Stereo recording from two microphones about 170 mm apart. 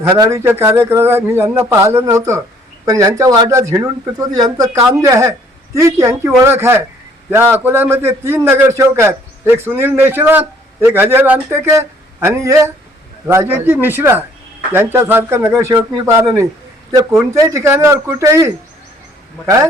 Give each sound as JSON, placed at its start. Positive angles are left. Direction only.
{"t": 0.0, "sound": "speech", "side_deg": -15}